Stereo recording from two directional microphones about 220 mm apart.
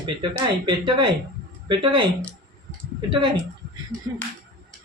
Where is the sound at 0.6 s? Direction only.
20° right (ahead or behind).